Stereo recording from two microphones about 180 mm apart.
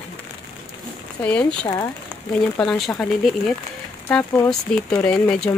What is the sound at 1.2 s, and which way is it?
Speech, 10° left (ahead or behind).